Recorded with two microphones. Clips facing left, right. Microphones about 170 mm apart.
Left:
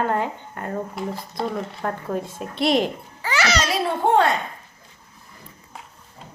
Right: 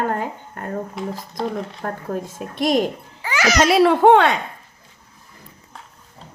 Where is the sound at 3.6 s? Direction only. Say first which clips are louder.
Right 9 dB; 80° right.